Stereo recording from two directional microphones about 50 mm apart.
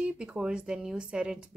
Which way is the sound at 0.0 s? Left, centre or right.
Centre.